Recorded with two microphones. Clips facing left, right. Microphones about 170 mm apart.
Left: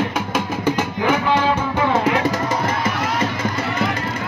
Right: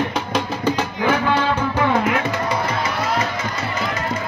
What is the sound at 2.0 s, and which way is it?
Music, 40° left (ahead or behind).